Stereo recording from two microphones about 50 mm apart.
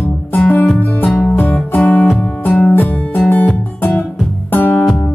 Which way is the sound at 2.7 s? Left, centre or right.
Left.